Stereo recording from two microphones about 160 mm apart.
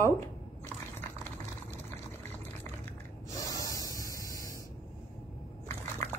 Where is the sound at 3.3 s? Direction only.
20° left (ahead or behind).